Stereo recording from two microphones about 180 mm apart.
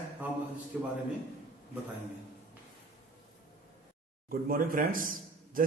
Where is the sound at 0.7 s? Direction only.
5° right (ahead or behind).